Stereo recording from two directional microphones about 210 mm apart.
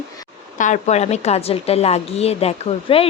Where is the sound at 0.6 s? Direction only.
35° left (ahead or behind).